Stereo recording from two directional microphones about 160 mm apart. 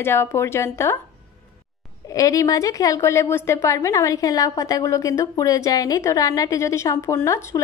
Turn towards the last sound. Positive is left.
turn(degrees=20)  # may be behind; listen again after turning